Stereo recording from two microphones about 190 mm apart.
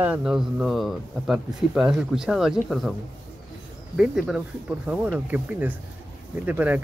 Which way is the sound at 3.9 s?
5° right (ahead or behind).